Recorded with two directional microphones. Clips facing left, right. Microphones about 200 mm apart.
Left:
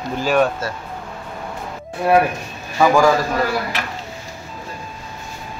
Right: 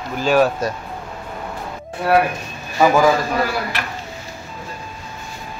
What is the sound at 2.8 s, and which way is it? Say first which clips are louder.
Speech: even; 5° right (ahead or behind).